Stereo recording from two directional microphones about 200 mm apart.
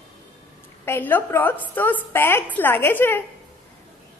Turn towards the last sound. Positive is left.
turn(degrees=10)  # may be behind; listen again after turning